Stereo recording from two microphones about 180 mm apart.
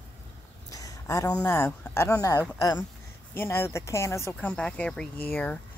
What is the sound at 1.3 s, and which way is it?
Speech, 15° left (ahead or behind).